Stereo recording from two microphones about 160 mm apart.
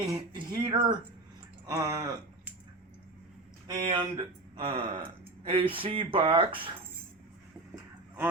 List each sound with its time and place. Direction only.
0.1 s speech: 30° right (ahead or behind)
3.7 s speech: 20° right (ahead or behind)
4.6 s speech: 35° right (ahead or behind)